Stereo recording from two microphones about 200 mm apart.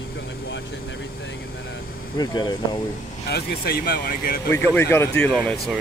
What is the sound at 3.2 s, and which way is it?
Speech, 50° left (ahead or behind).